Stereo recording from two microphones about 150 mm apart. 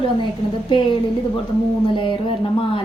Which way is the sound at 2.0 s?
35° left (ahead or behind).